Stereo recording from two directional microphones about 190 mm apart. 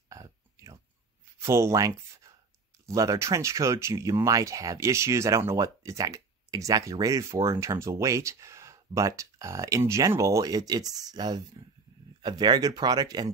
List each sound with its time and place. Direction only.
0.1 s burping: 15° right (ahead or behind)
1.4 s speech: 15° right (ahead or behind)